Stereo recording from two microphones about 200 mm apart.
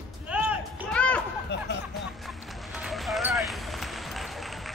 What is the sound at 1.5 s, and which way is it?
Music, 60° left (ahead or behind).